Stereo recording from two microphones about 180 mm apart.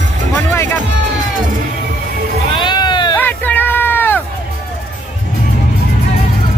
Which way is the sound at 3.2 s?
10° left (ahead or behind).